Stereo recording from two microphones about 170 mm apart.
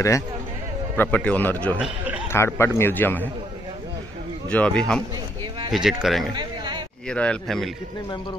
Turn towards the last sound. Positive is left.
turn(degrees=5)  # may be behind; listen again after turning